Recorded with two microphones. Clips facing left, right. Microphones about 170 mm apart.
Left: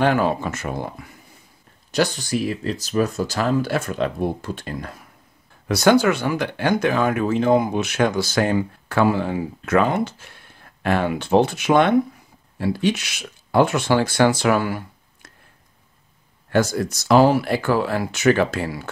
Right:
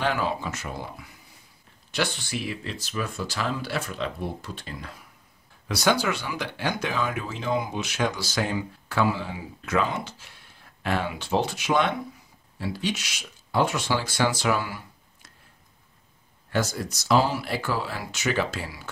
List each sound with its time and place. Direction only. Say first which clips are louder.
0.0 s speech: left 8 dB; 50° left (ahead or behind)
16.4 s speech: left 8 dB; 55° left (ahead or behind)